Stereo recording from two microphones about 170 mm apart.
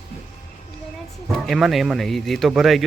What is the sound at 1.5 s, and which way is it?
Speech, centre (ahead or behind).